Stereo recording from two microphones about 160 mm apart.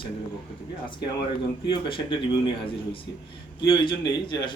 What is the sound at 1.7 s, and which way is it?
Speech, 30° left (ahead or behind).